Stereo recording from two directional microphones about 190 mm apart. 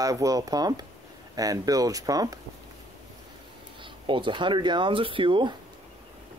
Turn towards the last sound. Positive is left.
turn(degrees=-25)  # may be behind; listen again after turning